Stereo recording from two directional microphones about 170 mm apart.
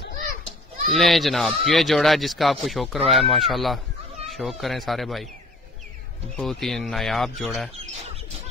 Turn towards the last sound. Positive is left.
turn(degrees=0)  # may be behind; listen again after turning